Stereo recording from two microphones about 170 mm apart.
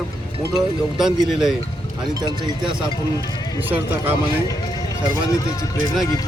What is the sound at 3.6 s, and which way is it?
Speech, 10° right (ahead or behind).